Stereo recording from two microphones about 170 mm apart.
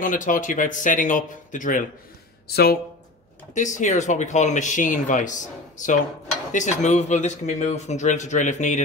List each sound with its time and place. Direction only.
0.0 s speech: 50° left (ahead or behind)
2.4 s speech: 65° left (ahead or behind)
3.5 s speech: 45° left (ahead or behind)